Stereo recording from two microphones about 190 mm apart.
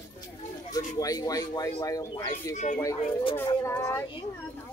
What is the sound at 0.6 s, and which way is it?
Speech, 20° left (ahead or behind).